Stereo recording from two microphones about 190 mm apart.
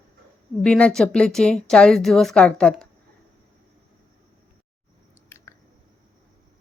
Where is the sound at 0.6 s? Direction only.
5° left (ahead or behind).